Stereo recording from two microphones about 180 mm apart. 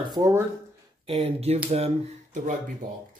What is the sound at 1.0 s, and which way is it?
Speech, 35° right (ahead or behind).